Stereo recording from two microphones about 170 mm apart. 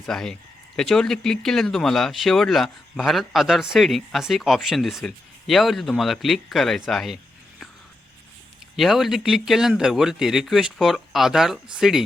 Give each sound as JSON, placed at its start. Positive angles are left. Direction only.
{"t": 0.0, "sound": "speech", "side_deg": 5}
{"t": 8.7, "sound": "speech", "side_deg": 0}